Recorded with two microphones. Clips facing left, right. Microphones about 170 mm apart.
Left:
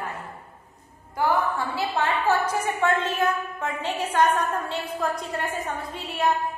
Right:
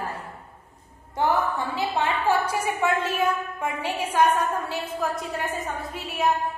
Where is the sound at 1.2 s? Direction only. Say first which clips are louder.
Even; 20° right (ahead or behind).